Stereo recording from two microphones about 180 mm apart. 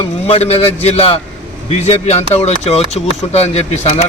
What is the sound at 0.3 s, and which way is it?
Speech, 35° left (ahead or behind).